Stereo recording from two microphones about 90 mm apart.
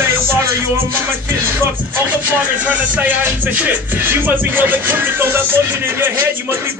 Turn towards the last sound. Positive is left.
turn(degrees=-25)  # may be behind; listen again after turning